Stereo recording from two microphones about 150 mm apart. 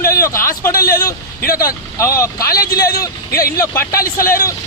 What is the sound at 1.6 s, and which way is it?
Speech, 20° left (ahead or behind).